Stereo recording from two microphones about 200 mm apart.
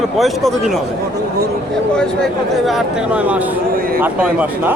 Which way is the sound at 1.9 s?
Centre (ahead or behind).